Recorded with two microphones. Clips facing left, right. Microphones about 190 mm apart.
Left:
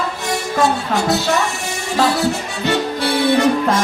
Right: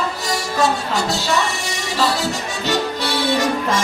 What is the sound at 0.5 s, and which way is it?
Music, 55° left (ahead or behind).